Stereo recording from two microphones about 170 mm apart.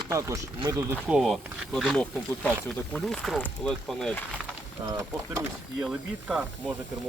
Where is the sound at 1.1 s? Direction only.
Centre (ahead or behind).